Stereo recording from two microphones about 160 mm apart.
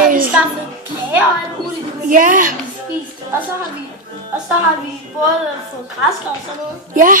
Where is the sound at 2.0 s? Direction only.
55° right (ahead or behind).